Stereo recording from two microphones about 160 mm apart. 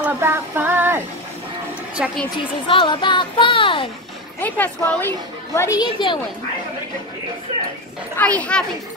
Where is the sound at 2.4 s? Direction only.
30° left (ahead or behind).